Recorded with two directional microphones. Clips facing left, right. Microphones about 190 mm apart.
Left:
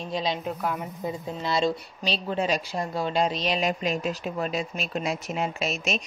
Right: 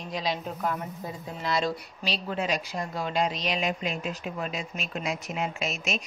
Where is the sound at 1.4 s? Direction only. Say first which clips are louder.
Left 2 dB; 25° left (ahead or behind).